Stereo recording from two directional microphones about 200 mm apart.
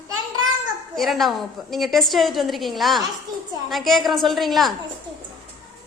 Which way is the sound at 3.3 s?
20° right (ahead or behind).